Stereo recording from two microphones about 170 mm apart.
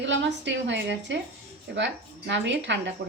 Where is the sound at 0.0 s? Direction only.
90° right.